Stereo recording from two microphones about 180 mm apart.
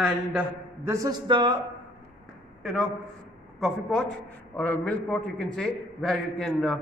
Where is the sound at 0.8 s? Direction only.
15° right (ahead or behind).